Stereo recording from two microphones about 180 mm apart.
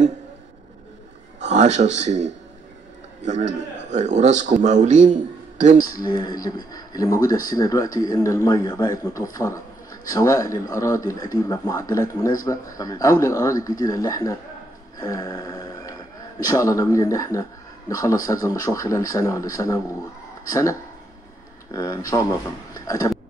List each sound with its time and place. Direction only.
1.4 s a man's voice: 40° right (ahead or behind)
3.5 s a man's voice: 40° right (ahead or behind)
5.9 s a man's voice: 20° left (ahead or behind)
15.0 s a sound: 20° left (ahead or behind)
16.4 s a man's voice: 15° left (ahead or behind)
21.7 s a man's voice: 20° left (ahead or behind)